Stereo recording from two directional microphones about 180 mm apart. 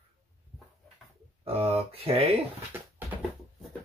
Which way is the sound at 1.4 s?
35° right (ahead or behind).